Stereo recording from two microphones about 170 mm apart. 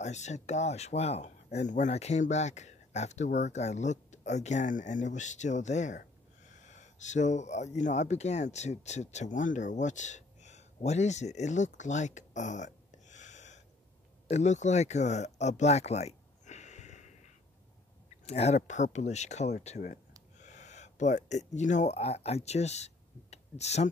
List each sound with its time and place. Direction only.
0.0 s speech: 40° left (ahead or behind)
14.3 s a sound: 45° left (ahead or behind)
18.2 s speech: 40° left (ahead or behind)